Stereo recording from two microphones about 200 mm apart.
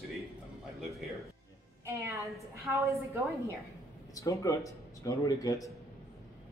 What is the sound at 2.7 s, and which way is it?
Speech, 15° right (ahead or behind).